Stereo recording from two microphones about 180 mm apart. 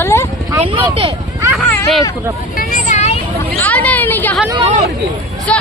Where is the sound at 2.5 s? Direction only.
45° left (ahead or behind).